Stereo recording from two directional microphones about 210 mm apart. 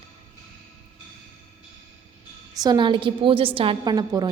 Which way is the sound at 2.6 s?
20° right (ahead or behind).